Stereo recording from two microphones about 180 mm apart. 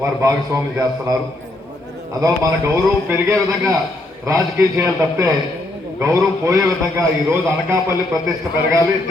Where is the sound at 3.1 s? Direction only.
15° right (ahead or behind).